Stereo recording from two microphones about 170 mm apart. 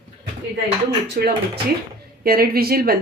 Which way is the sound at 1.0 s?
70° right (ahead or behind).